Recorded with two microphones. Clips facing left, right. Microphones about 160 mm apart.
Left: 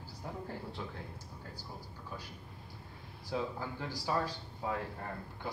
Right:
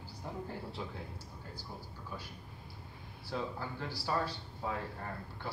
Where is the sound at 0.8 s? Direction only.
10° right (ahead or behind).